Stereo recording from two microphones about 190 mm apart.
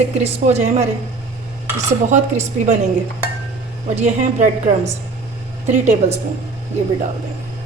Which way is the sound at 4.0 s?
40° right (ahead or behind).